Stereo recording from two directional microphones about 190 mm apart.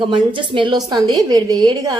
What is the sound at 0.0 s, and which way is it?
A woman's voice, 25° right (ahead or behind).